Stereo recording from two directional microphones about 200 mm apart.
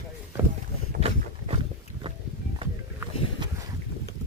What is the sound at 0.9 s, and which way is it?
Boat, 30° right (ahead or behind).